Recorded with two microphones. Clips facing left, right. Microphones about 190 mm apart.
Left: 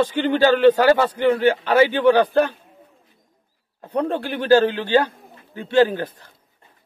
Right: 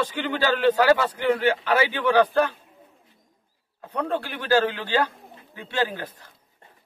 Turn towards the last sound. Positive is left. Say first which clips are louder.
# left 10 dB
turn(degrees=30)  # may be behind; listen again after turning